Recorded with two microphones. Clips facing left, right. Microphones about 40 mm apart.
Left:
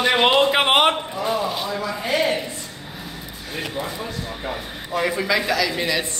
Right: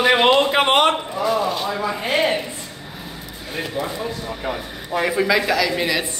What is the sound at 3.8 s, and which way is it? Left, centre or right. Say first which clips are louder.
Speech: right 3 dB; centre.